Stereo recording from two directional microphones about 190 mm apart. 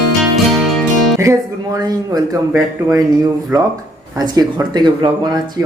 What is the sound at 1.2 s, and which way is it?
Speech, 15° right (ahead or behind).